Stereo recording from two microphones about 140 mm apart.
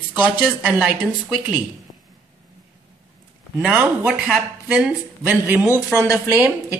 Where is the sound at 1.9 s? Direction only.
45° left (ahead or behind).